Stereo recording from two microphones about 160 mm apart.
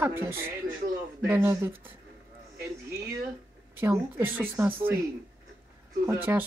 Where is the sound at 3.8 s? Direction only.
15° right (ahead or behind).